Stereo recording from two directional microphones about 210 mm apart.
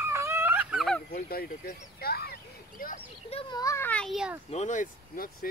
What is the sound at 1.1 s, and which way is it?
Speech, 45° left (ahead or behind).